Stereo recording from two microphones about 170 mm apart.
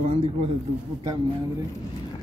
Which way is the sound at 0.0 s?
40° right (ahead or behind).